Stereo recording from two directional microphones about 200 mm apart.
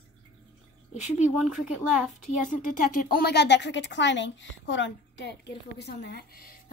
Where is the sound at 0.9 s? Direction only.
35° left (ahead or behind).